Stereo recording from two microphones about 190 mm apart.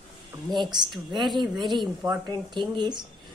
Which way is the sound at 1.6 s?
25° right (ahead or behind).